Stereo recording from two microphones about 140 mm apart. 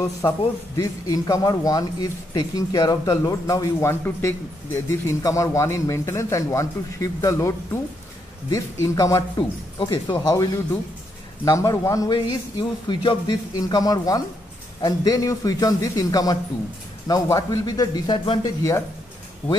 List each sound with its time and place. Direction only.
0.7 s speech: 25° left (ahead or behind)
9.8 s speech: 35° left (ahead or behind)